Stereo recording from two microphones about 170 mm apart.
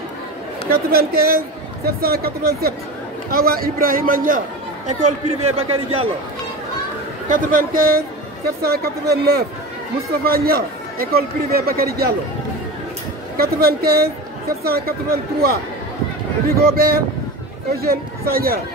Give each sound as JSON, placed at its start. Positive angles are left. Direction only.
{"t": 0.7, "sound": "speech", "side_deg": -65}
{"t": 4.8, "sound": "speech", "side_deg": -40}
{"t": 7.2, "sound": "speech", "side_deg": -55}
{"t": 13.4, "sound": "speech", "side_deg": -65}